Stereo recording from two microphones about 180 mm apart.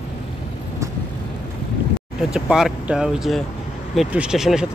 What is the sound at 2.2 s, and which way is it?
Speech, 5° right (ahead or behind).